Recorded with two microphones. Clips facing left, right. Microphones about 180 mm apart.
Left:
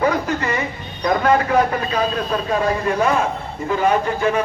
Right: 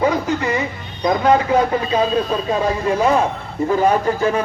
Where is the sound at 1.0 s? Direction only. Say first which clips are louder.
Right 2 dB; 20° right (ahead or behind).